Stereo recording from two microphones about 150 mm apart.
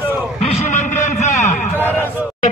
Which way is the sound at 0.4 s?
45° left (ahead or behind).